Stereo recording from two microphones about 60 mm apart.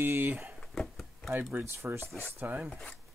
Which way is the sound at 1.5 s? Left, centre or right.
Right.